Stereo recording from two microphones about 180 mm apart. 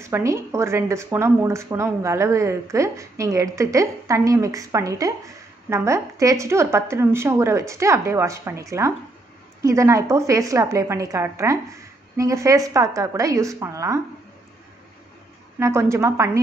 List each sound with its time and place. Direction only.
0.0 s speech: 15° right (ahead or behind)
15.6 s speech: 15° right (ahead or behind)